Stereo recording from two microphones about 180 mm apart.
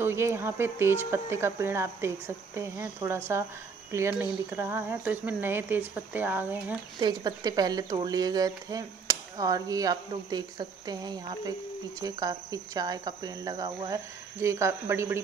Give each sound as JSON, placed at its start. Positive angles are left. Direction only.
{"t": 0.0, "sound": "speech", "side_deg": -15}
{"t": 7.0, "sound": "speech", "side_deg": -25}